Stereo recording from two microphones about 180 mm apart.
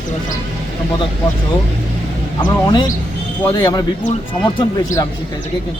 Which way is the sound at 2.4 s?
25° left (ahead or behind).